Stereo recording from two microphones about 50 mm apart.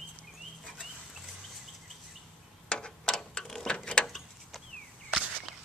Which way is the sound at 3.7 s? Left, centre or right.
Left.